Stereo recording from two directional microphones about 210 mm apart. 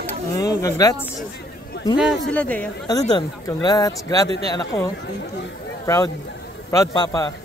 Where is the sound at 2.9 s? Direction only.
20° left (ahead or behind).